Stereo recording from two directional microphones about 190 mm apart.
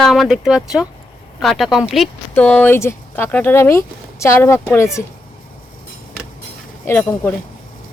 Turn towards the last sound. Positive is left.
turn(degrees=10)  # may be behind; listen again after turning